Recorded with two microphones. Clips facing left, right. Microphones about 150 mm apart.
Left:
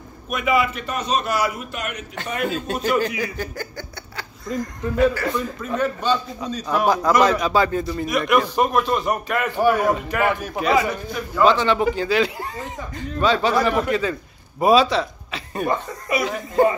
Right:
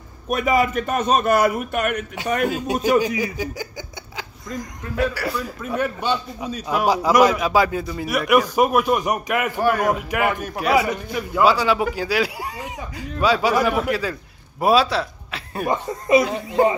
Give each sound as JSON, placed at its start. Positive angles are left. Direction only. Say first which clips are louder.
{"t": 0.3, "sound": "a man's voice", "louder": "right 2 dB", "side_deg": -40}
{"t": 2.5, "sound": "a man's voice", "louder": "right 1 dB", "side_deg": -10}
{"t": 9.6, "sound": "a man's voice", "louder": "left 3 dB", "side_deg": 10}
{"t": 9.8, "sound": "a man's voice", "louder": "left 1 dB", "side_deg": -10}